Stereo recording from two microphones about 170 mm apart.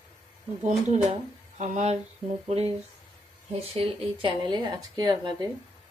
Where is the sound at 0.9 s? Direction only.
40° right (ahead or behind).